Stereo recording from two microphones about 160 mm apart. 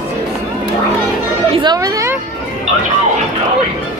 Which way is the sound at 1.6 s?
20° right (ahead or behind).